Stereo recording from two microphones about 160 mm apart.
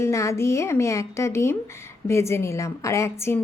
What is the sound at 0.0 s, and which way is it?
Speech, 20° left (ahead or behind).